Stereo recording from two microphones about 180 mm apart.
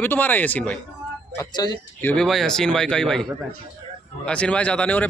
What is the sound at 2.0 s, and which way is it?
A man's voice, 10° left (ahead or behind).